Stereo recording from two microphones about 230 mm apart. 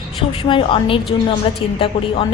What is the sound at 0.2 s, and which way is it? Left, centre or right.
A woman's voice, left.